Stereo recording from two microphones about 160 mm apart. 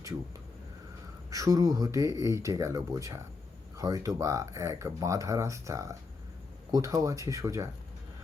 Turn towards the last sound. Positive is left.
turn(degrees=-20)  # may be behind; listen again after turning